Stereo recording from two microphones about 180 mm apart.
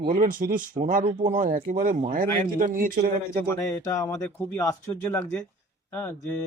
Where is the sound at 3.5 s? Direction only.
15° left (ahead or behind).